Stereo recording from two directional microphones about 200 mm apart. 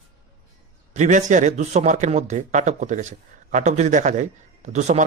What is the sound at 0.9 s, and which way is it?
A man's voice, 40° right (ahead or behind).